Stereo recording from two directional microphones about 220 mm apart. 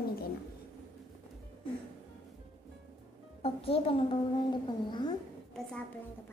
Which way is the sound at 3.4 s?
25° left (ahead or behind).